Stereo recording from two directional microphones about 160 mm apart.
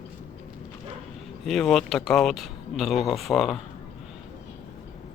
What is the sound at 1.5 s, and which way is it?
Speech, centre (ahead or behind).